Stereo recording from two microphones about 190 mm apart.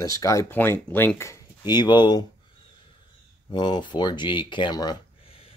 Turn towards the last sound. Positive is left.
turn(degrees=30)  # may be behind; listen again after turning